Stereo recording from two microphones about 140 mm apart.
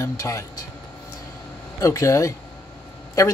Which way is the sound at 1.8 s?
25° left (ahead or behind).